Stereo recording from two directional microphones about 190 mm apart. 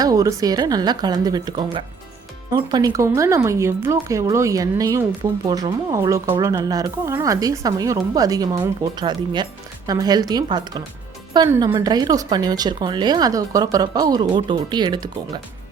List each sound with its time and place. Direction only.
0.0 s speech: 20° right (ahead or behind)